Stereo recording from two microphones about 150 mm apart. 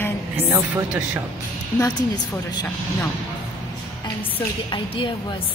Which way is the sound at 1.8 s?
25° left (ahead or behind).